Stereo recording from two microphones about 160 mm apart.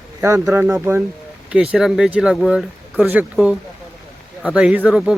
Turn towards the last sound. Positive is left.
turn(degrees=-5)  # may be behind; listen again after turning